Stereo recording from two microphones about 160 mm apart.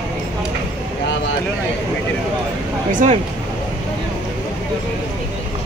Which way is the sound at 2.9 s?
55° right (ahead or behind).